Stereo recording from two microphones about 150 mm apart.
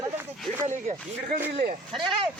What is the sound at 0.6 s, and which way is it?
Speech, 55° right (ahead or behind).